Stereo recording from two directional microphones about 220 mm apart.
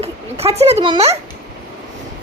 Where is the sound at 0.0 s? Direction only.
30° right (ahead or behind).